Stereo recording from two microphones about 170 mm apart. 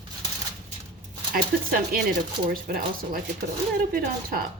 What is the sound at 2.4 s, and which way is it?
Speech, 60° right (ahead or behind).